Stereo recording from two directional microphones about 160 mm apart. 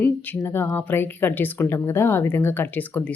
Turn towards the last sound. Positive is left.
turn(degrees=10)  # may be behind; listen again after turning